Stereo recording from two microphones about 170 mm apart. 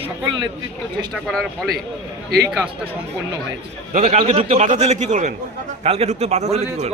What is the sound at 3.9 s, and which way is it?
A man's voice, 40° right (ahead or behind).